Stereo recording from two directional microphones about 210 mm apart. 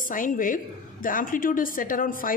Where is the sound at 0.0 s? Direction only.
40° left (ahead or behind).